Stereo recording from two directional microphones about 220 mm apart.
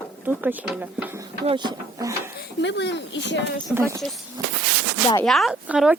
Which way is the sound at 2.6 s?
55° left (ahead or behind).